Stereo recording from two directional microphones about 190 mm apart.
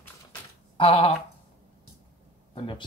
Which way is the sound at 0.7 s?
30° left (ahead or behind).